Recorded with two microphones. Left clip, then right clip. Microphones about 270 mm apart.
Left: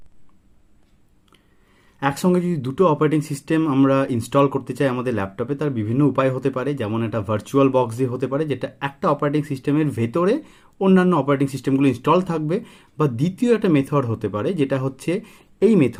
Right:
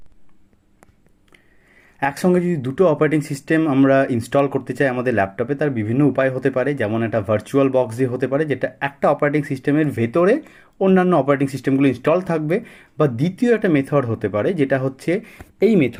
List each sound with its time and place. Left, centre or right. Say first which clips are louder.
2.0 s speech: right 2 dB; centre